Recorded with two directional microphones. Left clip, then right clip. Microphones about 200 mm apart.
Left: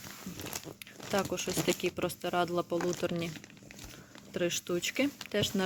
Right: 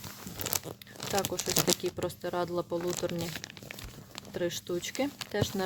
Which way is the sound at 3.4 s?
35° right (ahead or behind).